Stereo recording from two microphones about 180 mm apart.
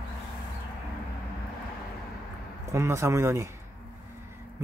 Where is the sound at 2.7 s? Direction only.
15° right (ahead or behind).